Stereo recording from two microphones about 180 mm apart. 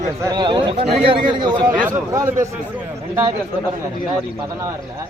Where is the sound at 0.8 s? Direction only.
60° right (ahead or behind).